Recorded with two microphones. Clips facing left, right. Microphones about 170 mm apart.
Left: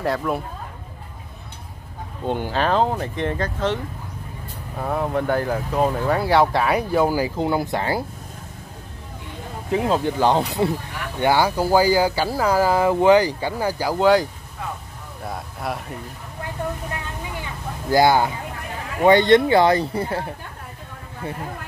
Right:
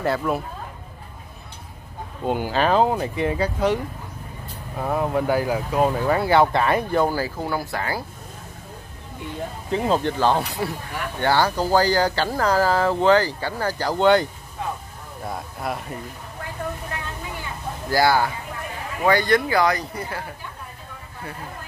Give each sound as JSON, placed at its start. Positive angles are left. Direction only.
{"t": 0.0, "sound": "speech", "side_deg": 0}
{"t": 2.2, "sound": "speech", "side_deg": -10}
{"t": 9.7, "sound": "speech", "side_deg": 5}
{"t": 10.1, "sound": "speech", "side_deg": 15}
{"t": 17.9, "sound": "speech", "side_deg": 20}